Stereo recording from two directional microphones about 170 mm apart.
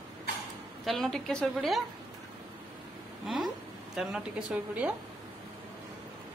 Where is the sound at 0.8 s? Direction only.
Centre (ahead or behind).